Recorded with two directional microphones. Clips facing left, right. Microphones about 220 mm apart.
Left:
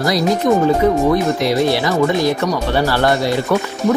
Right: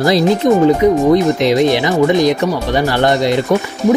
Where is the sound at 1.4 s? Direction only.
20° right (ahead or behind).